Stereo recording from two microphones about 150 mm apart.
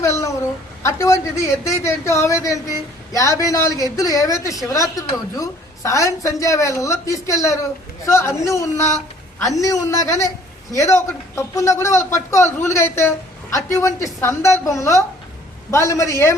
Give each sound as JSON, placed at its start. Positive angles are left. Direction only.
{"t": 0.0, "sound": "a woman's voice", "side_deg": 20}